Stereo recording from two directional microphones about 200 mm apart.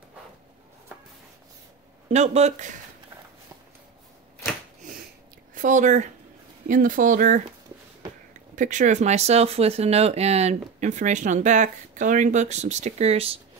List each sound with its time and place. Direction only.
2.0 s speech: 35° right (ahead or behind)
5.5 s speech: 40° right (ahead or behind)
8.5 s speech: 40° right (ahead or behind)